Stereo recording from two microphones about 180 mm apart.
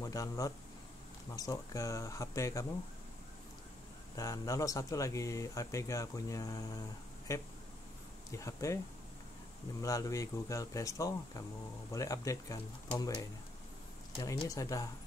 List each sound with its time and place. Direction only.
0.0 s a man's voice: 20° left (ahead or behind)
4.1 s speech: 20° left (ahead or behind)
9.8 s speech: 20° left (ahead or behind)